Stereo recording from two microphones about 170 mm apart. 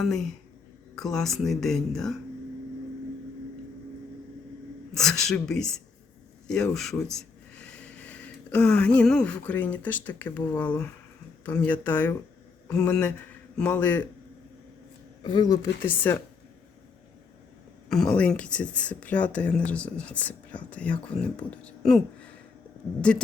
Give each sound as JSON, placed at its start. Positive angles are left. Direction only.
{"t": 0.0, "sound": "speech", "side_deg": 0}
{"t": 4.9, "sound": "a man's voice", "side_deg": 0}
{"t": 15.2, "sound": "speech", "side_deg": 25}
{"t": 15.9, "sound": "speech", "side_deg": 10}
{"t": 17.8, "sound": "speech", "side_deg": 5}